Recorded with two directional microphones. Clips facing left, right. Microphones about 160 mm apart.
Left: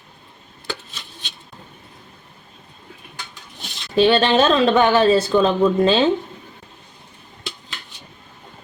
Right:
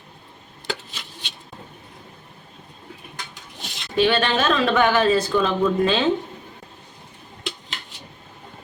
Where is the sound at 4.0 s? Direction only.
30° left (ahead or behind).